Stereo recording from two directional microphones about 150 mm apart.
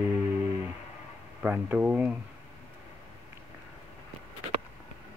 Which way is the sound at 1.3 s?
10° right (ahead or behind).